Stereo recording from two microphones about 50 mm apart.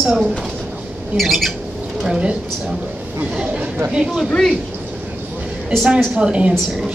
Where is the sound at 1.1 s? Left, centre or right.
Centre.